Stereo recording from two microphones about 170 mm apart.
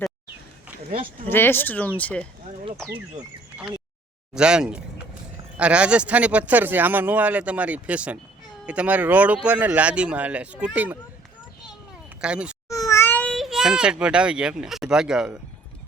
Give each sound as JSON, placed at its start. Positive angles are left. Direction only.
{"t": 0.9, "sound": "speech", "side_deg": -35}
{"t": 1.3, "sound": "speech", "side_deg": 15}
{"t": 4.4, "sound": "speech", "side_deg": -5}
{"t": 12.2, "sound": "speech", "side_deg": -5}
{"t": 12.6, "sound": "a child's voice", "side_deg": 20}